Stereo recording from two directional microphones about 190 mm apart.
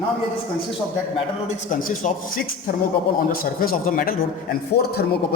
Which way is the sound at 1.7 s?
45° left (ahead or behind).